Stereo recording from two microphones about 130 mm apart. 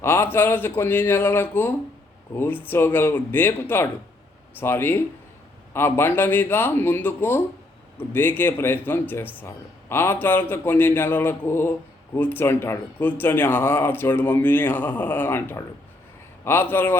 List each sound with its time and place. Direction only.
0.0 s speech: 20° left (ahead or behind)